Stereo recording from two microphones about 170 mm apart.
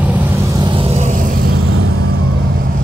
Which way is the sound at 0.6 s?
30° right (ahead or behind).